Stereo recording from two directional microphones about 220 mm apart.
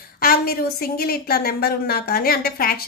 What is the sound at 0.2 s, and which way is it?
A woman's voice, 40° left (ahead or behind).